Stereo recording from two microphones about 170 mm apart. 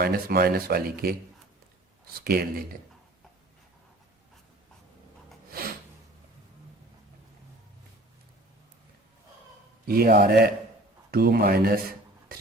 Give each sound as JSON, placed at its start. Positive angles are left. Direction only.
{"t": 0.0, "sound": "speech", "side_deg": -60}
{"t": 2.2, "sound": "speech", "side_deg": -60}
{"t": 9.8, "sound": "speech", "side_deg": -60}